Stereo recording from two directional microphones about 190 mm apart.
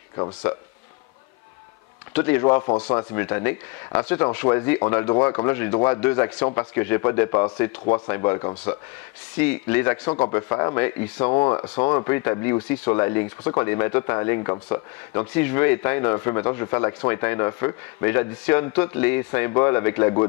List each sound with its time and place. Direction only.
0.2 s speech: 20° left (ahead or behind)
2.1 s speech: 10° left (ahead or behind)
2.6 s speech: 25° left (ahead or behind)
9.4 s speech: 10° left (ahead or behind)